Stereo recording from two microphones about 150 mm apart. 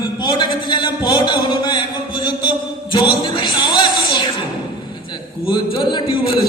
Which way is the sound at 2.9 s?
30° left (ahead or behind).